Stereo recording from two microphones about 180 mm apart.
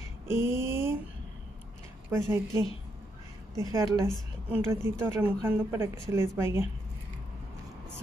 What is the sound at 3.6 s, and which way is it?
Music, 15° right (ahead or behind).